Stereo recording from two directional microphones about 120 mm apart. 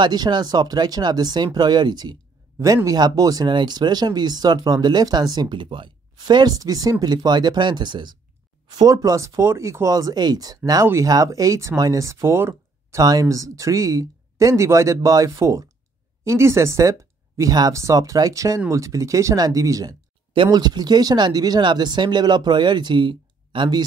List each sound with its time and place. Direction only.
0.0 s speech: 35° right (ahead or behind)